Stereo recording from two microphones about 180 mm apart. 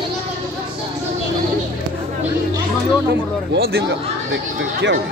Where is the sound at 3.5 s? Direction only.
60° right (ahead or behind); by 4.9 s 80° right.